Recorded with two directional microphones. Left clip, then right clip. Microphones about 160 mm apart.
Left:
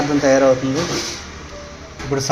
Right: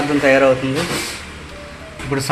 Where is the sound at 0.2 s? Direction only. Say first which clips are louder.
Right 1 dB; centre (ahead or behind).